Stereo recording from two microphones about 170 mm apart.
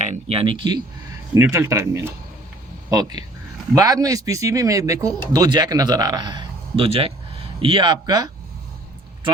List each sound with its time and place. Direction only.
0.0 s speech: 40° right (ahead or behind)
1.3 s speech: 15° right (ahead or behind)